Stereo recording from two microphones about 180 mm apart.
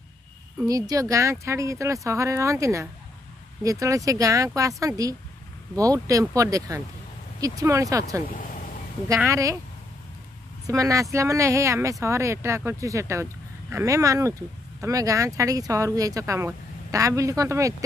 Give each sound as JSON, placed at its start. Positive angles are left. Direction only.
{"t": 0.7, "sound": "speech", "side_deg": -20}
{"t": 8.3, "sound": "speech", "side_deg": 50}
{"t": 9.1, "sound": "speech", "side_deg": -15}
{"t": 10.7, "sound": "speech", "side_deg": -20}